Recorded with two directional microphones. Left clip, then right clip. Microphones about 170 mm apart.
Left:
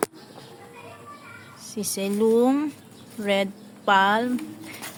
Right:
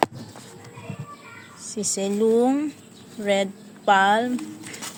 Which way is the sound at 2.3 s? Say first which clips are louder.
Even; 15° left (ahead or behind).